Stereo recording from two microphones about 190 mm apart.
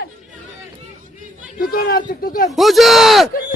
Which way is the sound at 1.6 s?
50° left (ahead or behind).